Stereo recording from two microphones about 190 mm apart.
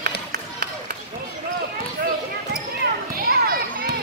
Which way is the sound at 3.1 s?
50° right (ahead or behind).